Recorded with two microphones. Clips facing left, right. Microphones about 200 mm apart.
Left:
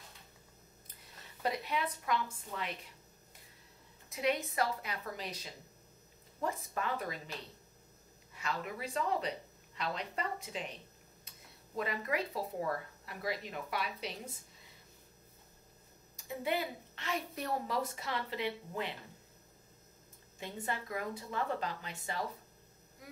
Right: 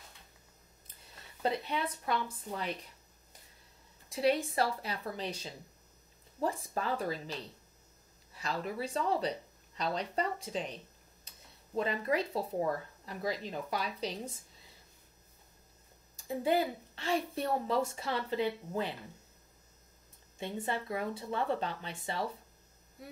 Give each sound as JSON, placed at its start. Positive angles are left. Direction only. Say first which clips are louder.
{"t": 1.4, "sound": "a woman's voice", "louder": "right 2 dB", "side_deg": -30}
{"t": 4.1, "sound": "a woman's voice", "louder": "right 4 dB", "side_deg": -30}
{"t": 8.4, "sound": "a woman's voice", "louder": "right 3 dB", "side_deg": -35}
{"t": 16.2, "sound": "a woman's voice", "louder": "right 6 dB", "side_deg": -30}
{"t": 20.3, "sound": "speech", "louder": "right 4 dB", "side_deg": -25}